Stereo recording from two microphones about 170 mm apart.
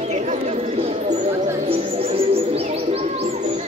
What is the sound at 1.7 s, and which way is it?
Bird, 35° right (ahead or behind).